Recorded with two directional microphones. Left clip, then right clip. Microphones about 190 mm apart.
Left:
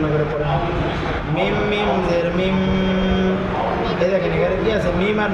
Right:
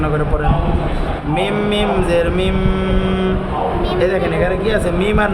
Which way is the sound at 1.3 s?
40° right (ahead or behind).